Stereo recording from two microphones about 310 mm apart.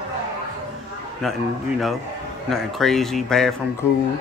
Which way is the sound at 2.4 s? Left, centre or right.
Centre.